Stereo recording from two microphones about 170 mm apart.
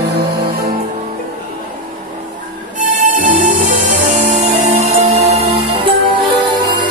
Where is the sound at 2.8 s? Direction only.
50° right (ahead or behind).